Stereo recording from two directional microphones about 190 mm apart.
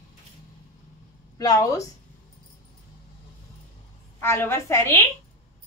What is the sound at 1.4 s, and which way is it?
Speech, 20° left (ahead or behind).